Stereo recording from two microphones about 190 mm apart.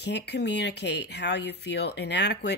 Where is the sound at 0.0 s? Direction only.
60° left (ahead or behind).